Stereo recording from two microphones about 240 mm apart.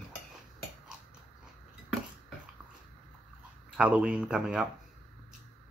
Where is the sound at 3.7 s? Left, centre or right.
Centre.